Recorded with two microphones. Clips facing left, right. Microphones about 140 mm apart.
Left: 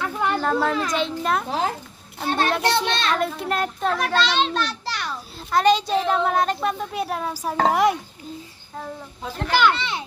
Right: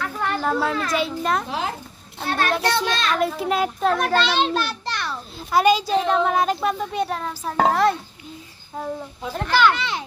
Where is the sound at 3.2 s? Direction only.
Centre (ahead or behind).